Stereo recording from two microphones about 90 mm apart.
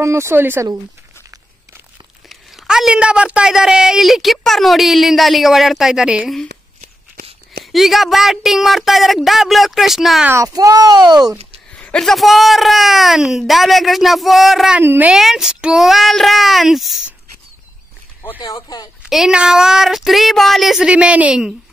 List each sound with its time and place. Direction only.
0.0 s speech: 30° right (ahead or behind)
2.2 s speech: 5° right (ahead or behind)
7.6 s speech: centre (ahead or behind)
10.3 s a child's voice: 40° right (ahead or behind)
11.7 s a sound: 15° left (ahead or behind)
12.0 s speech: centre (ahead or behind)
14.8 s a woman's voice: 20° right (ahead or behind)
15.1 s speech: 5° right (ahead or behind)
18.4 s speech: 45° left (ahead or behind)
19.0 s speech: 5° right (ahead or behind)